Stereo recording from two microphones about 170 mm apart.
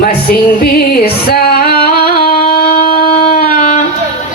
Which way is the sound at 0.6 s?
65° left (ahead or behind).